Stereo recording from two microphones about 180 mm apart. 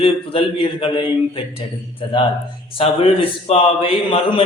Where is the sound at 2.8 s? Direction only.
30° left (ahead or behind).